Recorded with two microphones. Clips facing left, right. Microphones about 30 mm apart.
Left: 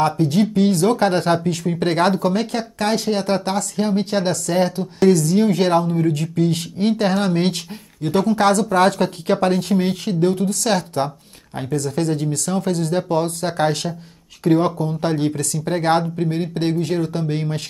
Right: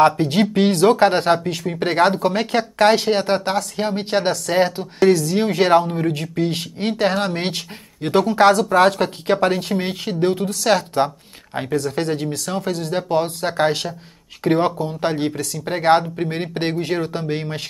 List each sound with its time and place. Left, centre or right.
0.0 s speech: right; by 2.2 s centre
2.2 s speech: right
2.8 s speech: right
3.3 s speech: centre
8.0 s speech: right
14.4 s speech: right
15.0 s speech: centre